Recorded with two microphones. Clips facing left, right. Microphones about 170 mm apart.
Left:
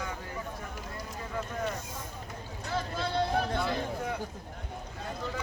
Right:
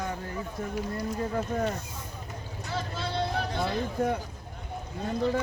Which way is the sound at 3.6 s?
45° right (ahead or behind).